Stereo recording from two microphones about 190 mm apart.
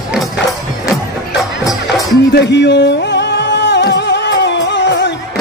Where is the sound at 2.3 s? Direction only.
65° left (ahead or behind).